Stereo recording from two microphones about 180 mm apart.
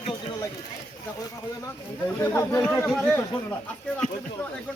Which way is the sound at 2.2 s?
15° left (ahead or behind).